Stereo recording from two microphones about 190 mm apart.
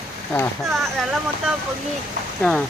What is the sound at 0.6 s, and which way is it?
Speech, centre (ahead or behind).